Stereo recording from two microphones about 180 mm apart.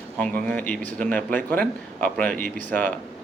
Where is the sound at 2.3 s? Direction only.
55° left (ahead or behind).